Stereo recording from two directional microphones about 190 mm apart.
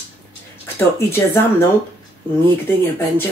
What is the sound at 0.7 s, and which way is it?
Speech, 10° left (ahead or behind).